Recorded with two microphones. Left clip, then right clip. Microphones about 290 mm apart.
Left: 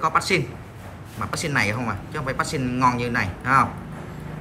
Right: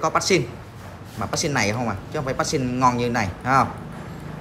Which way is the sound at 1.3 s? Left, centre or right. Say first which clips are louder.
Even; centre.